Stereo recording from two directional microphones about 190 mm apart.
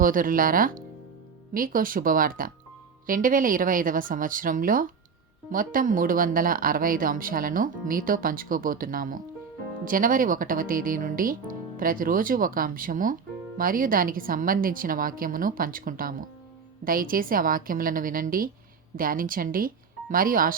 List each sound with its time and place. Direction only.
0.0 s speech: 45° right (ahead or behind)